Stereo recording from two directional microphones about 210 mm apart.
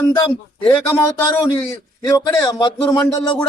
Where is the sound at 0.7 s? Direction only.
10° left (ahead or behind).